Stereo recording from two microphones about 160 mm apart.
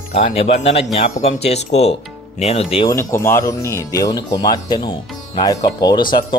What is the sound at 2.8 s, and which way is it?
Speech, 15° left (ahead or behind).